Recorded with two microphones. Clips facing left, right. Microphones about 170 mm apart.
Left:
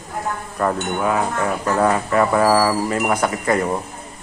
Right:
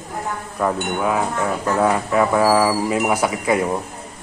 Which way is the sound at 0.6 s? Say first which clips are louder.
Even; 5° right (ahead or behind).